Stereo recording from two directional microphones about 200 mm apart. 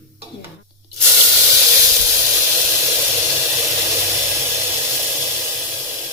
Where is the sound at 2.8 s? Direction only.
15° right (ahead or behind).